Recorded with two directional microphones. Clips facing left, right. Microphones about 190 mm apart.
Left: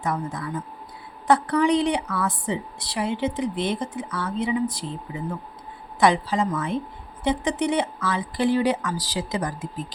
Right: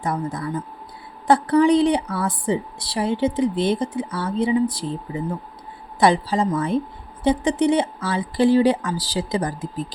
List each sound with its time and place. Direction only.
0.0 s a woman's voice: 35° right (ahead or behind)